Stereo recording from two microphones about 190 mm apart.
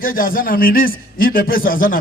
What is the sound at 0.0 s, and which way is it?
A man's voice, 50° left (ahead or behind).